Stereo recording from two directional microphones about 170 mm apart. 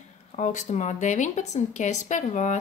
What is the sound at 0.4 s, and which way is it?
A woman's voice, 45° left (ahead or behind).